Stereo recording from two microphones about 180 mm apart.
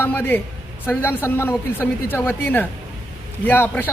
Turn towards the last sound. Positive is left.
turn(degrees=10)  # may be behind; listen again after turning